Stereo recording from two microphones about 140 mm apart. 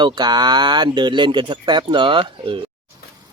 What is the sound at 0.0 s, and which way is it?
Speech, 30° right (ahead or behind).